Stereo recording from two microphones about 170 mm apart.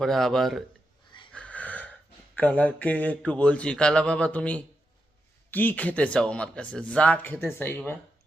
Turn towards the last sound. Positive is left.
turn(degrees=15)  # may be behind; listen again after turning